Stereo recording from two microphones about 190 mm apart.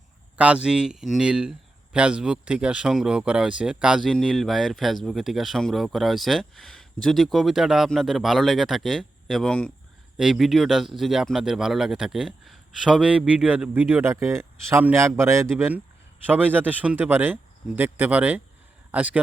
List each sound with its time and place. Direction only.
0.3 s speech: 5° right (ahead or behind)